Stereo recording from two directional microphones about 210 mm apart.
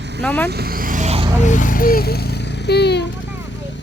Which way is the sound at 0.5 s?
45° right (ahead or behind).